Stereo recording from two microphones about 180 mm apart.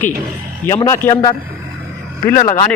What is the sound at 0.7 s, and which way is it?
Speech, 15° left (ahead or behind).